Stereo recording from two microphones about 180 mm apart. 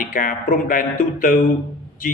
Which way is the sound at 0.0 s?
50° left (ahead or behind).